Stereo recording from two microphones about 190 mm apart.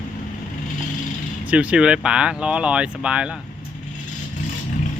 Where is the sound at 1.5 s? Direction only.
5° right (ahead or behind).